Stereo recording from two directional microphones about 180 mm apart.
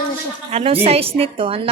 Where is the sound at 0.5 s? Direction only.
30° right (ahead or behind).